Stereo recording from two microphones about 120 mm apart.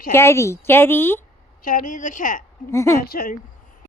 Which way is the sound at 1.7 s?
90° left.